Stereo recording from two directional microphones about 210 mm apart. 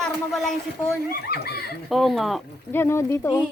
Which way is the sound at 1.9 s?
Centre (ahead or behind).